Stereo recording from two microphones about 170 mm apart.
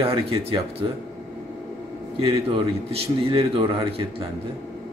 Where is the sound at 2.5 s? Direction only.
35° right (ahead or behind).